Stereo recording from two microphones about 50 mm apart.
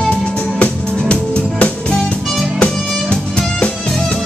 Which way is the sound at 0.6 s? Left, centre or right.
Left.